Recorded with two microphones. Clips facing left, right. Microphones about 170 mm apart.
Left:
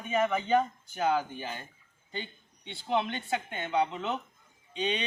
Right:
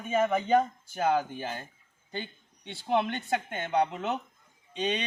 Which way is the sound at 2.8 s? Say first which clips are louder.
Right 2 dB; 50° right (ahead or behind).